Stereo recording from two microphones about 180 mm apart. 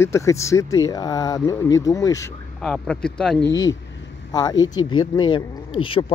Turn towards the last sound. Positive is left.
turn(degrees=30)  # may be behind; listen again after turning